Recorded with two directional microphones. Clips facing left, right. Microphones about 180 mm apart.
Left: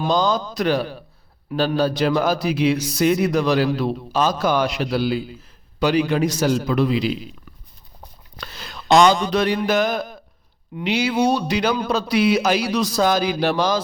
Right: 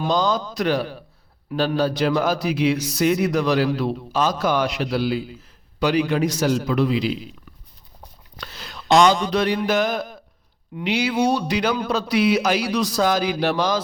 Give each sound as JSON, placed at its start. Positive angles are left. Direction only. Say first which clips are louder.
{"t": 0.0, "sound": "a man's voice", "louder": "left 1 dB", "side_deg": 30}
{"t": 8.4, "sound": "a sound", "louder": "left 1 dB", "side_deg": 50}
{"t": 10.8, "sound": "speech", "louder": "left 1 dB", "side_deg": 30}